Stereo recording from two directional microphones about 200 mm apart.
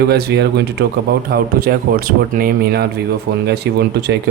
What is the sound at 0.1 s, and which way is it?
Speech, 55° right (ahead or behind).